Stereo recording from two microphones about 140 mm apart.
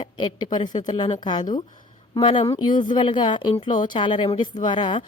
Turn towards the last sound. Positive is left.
turn(degrees=35)  # may be behind; listen again after turning